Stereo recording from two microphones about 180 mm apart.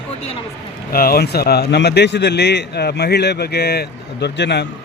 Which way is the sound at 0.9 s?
55° left (ahead or behind).